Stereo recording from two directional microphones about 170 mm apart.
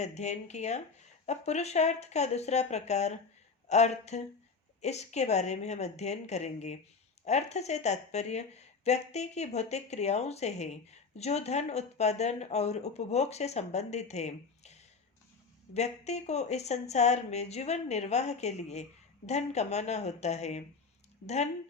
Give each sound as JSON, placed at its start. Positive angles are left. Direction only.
{"t": 0.0, "sound": "speech", "side_deg": 40}
{"t": 15.7, "sound": "speech", "side_deg": 40}